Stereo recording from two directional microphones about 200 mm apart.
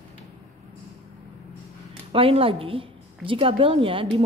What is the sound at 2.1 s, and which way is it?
A woman's voice, 25° right (ahead or behind).